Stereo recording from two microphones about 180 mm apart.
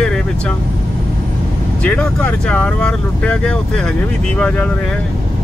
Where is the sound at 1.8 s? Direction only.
5° left (ahead or behind).